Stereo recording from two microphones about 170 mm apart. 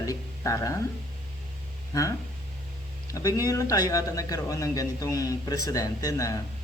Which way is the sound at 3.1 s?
20° left (ahead or behind).